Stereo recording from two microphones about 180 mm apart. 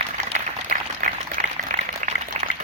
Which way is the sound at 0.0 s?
40° right (ahead or behind).